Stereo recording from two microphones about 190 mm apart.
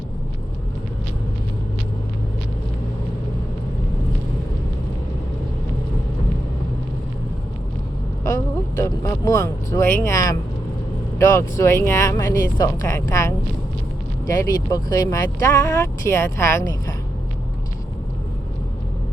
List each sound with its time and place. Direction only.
8.2 s speech: 15° left (ahead or behind)